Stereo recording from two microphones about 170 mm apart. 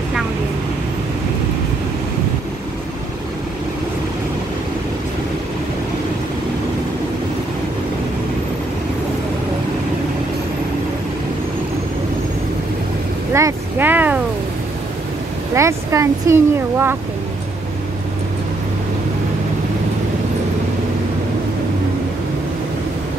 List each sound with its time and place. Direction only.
13.3 s vehicle: 15° right (ahead or behind)
15.5 s speech: 15° right (ahead or behind)